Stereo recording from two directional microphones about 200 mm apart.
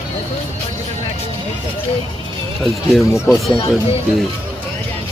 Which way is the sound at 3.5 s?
25° left (ahead or behind).